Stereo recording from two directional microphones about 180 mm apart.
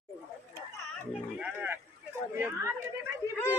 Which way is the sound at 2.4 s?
15° right (ahead or behind).